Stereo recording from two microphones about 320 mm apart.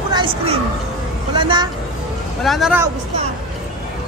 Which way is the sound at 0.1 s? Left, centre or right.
Centre.